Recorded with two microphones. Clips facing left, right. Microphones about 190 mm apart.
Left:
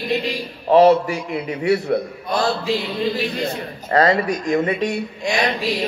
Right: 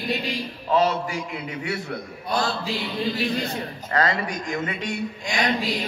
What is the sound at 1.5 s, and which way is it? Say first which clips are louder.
Speech: left 13 dB; 35° left (ahead or behind).